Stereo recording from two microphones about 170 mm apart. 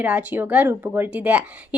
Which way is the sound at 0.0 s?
10° right (ahead or behind).